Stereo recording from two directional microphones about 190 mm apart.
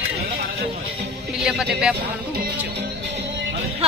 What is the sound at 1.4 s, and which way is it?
Speech, 5° right (ahead or behind).